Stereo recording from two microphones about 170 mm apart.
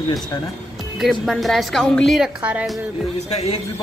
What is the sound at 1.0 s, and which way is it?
A woman's voice, centre (ahead or behind).